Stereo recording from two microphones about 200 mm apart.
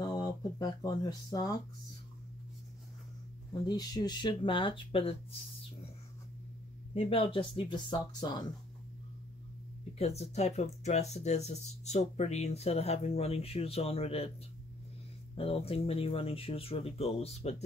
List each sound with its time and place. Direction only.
0.0 s speech: 20° left (ahead or behind)
3.6 s speech: 20° left (ahead or behind)
6.9 s speech: 30° left (ahead or behind)
9.9 s speech: 30° left (ahead or behind)
15.3 s speech: 30° left (ahead or behind)